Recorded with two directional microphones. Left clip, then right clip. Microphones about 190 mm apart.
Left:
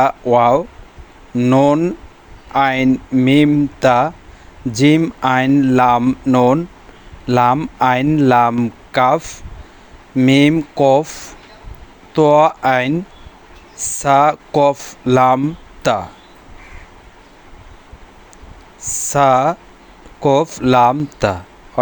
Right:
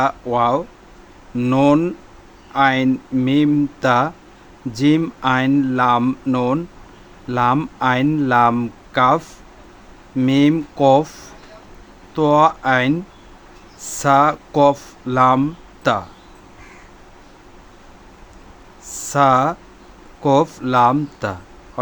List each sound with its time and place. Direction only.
0.0 s speech: 25° left (ahead or behind)
2.5 s speech: 30° left (ahead or behind)
6.0 s speech: 15° left (ahead or behind)
18.8 s a sound: 25° left (ahead or behind)
20.2 s speech: 25° left (ahead or behind)